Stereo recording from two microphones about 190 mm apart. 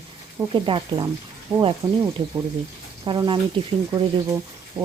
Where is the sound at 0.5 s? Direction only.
25° right (ahead or behind).